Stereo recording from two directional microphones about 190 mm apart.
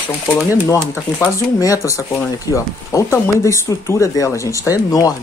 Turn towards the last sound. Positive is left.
turn(degrees=20)  # may be behind; listen again after turning